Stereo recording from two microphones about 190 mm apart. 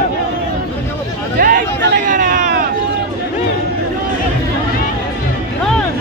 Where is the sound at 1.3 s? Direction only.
50° right (ahead or behind).